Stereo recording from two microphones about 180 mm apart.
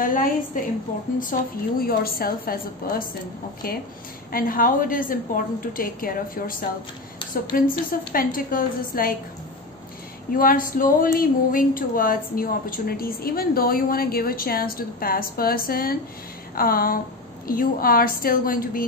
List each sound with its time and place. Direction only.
0.0 s a woman's voice: 50° left (ahead or behind)
1.3 s a woman's voice: 50° left (ahead or behind)
10.3 s a woman's voice: 50° left (ahead or behind)